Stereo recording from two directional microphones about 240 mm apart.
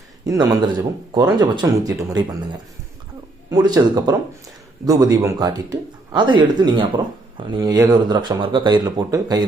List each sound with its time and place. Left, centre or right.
0.3 s speech: centre
3.5 s speech: centre